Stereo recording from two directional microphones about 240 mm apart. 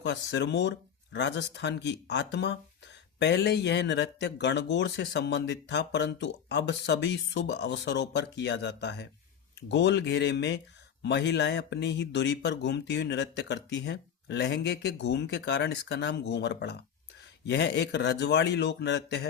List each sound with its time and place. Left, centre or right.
0.0 s speech: left